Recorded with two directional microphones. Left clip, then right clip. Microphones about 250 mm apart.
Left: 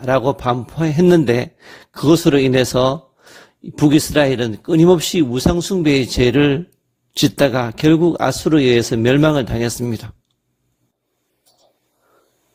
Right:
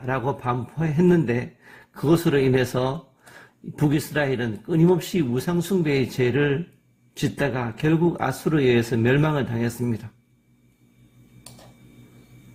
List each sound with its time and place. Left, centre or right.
0.0 s a man's voice: left